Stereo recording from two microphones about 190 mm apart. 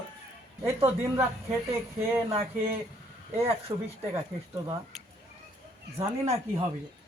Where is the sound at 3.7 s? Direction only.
25° right (ahead or behind).